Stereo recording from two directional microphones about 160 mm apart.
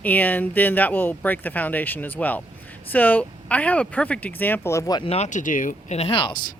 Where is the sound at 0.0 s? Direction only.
10° left (ahead or behind).